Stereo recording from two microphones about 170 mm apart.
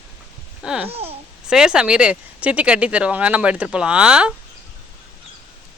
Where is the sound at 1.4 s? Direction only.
5° right (ahead or behind).